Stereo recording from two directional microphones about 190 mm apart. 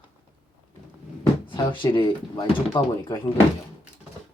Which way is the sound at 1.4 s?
25° left (ahead or behind).